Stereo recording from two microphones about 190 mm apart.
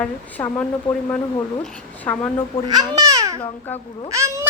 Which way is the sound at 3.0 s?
20° right (ahead or behind).